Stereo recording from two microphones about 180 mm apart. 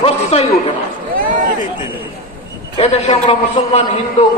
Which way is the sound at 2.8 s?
35° left (ahead or behind).